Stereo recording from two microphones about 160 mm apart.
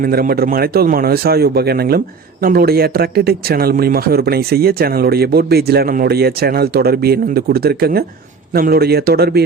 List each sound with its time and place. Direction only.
0.0 s speech: 70° right (ahead or behind)